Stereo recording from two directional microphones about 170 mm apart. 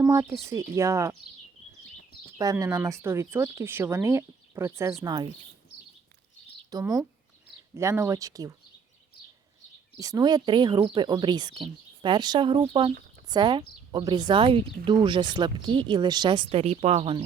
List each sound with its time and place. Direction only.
0.0 s speech: 20° right (ahead or behind)
2.4 s speech: 20° right (ahead or behind)
6.7 s speech: 20° right (ahead or behind)
10.0 s speech: 20° right (ahead or behind)